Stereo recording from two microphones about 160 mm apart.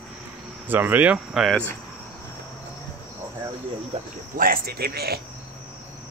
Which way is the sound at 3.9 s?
40° right (ahead or behind).